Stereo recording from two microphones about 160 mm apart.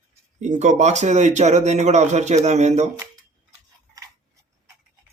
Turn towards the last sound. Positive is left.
turn(degrees=-20)  # may be behind; listen again after turning